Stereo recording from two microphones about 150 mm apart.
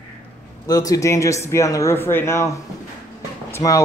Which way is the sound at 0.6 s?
25° left (ahead or behind).